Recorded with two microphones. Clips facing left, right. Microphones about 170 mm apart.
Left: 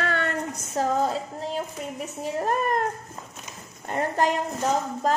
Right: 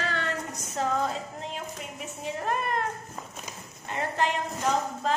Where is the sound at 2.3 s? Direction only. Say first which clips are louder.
Left 5 dB; 40° left (ahead or behind).